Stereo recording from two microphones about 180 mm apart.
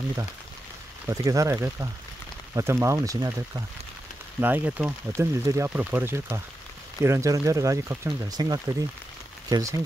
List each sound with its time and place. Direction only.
1.0 s speech: 20° right (ahead or behind)